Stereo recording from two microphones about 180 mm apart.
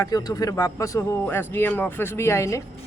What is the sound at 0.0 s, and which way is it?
A man's voice, 20° left (ahead or behind).